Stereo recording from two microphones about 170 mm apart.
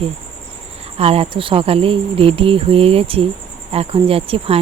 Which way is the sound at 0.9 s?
35° right (ahead or behind).